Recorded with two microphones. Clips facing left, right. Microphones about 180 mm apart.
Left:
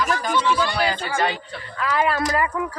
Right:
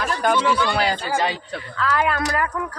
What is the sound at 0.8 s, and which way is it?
Speech, 40° right (ahead or behind).